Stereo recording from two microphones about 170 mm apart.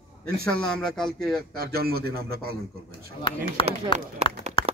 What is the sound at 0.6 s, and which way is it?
Speech, 5° left (ahead or behind).